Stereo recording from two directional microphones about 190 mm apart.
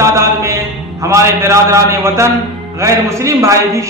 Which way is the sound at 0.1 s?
15° right (ahead or behind).